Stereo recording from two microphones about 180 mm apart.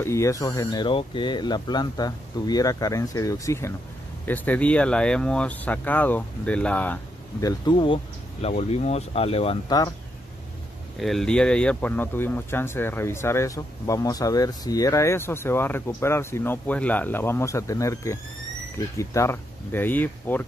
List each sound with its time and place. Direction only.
0.0 s speech: 15° left (ahead or behind); by 9.6 s 35° left (ahead or behind)
11.0 s speech: centre (ahead or behind)